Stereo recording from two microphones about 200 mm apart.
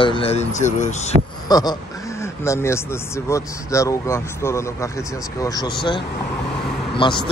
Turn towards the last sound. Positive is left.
turn(degrees=25)  # may be behind; listen again after turning